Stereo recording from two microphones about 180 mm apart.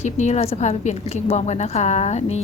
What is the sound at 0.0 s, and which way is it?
Speech, 40° left (ahead or behind).